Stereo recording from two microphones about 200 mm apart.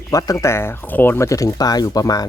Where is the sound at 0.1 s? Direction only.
15° left (ahead or behind).